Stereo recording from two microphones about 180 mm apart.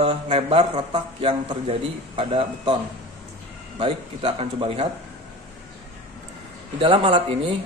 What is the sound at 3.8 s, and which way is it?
Speech, 30° right (ahead or behind).